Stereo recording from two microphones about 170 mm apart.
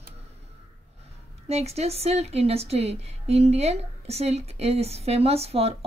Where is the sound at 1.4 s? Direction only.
40° right (ahead or behind).